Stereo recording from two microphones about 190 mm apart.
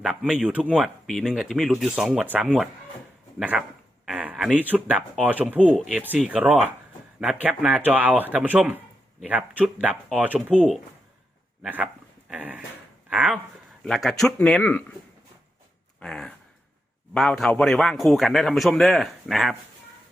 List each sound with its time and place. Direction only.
0.0 s speech: 5° right (ahead or behind)
5.5 s speech: 5° left (ahead or behind)
11.6 s speech: 5° right (ahead or behind); by 14.9 s 10° left (ahead or behind)
16.0 s a sound: 5° left (ahead or behind)
17.2 s speech: centre (ahead or behind)